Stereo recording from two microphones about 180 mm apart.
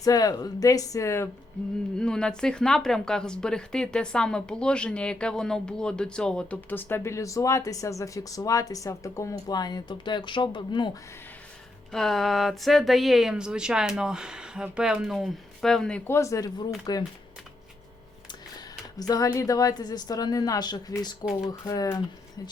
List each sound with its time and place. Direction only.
0.0 s speech: 20° left (ahead or behind)
2.0 s speech: 5° left (ahead or behind); by 10.9 s 25° left (ahead or behind)
11.9 s speech: centre (ahead or behind); by 17.0 s 20° left (ahead or behind)
18.3 s speech: 20° left (ahead or behind)